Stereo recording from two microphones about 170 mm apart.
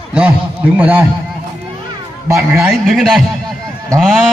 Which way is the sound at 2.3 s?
15° right (ahead or behind).